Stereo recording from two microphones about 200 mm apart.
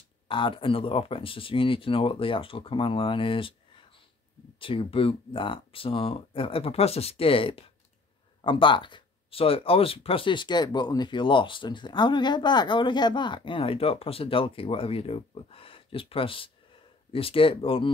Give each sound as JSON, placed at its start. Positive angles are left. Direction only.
{"t": 0.3, "sound": "speech", "side_deg": 25}